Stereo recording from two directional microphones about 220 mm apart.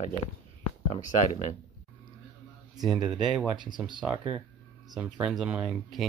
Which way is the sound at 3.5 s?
20° right (ahead or behind).